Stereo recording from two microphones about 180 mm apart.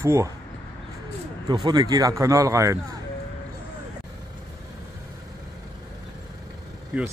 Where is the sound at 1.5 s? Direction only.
25° right (ahead or behind).